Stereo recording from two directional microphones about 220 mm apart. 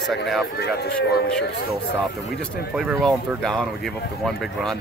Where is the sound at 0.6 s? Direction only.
45° left (ahead or behind).